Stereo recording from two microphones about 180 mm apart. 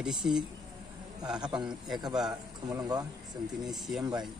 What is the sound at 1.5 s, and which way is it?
Speech, 5° right (ahead or behind).